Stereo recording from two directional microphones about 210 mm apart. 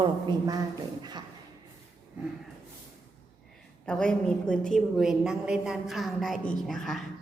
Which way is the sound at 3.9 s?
5° left (ahead or behind).